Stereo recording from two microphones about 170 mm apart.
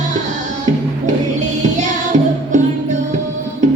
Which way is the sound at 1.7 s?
45° right (ahead or behind).